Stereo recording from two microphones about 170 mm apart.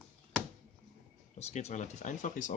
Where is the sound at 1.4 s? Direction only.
40° left (ahead or behind).